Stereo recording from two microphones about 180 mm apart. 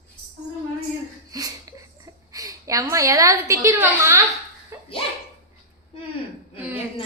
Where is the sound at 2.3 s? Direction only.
20° right (ahead or behind).